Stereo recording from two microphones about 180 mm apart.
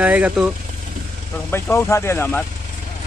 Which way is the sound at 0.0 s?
10° right (ahead or behind).